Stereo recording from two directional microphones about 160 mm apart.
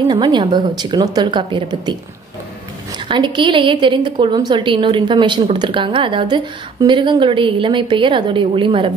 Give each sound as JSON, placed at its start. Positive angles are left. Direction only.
{"t": 0.1, "sound": "speech", "side_deg": -25}
{"t": 3.1, "sound": "a woman's voice", "side_deg": -30}